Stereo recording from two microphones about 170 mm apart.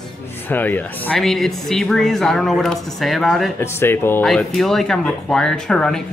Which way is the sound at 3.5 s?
15° left (ahead or behind).